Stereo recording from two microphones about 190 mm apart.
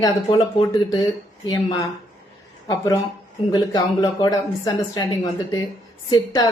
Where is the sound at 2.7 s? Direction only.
15° left (ahead or behind).